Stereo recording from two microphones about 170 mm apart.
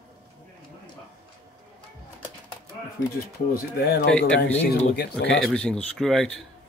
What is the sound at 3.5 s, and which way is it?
Speech, 70° left (ahead or behind).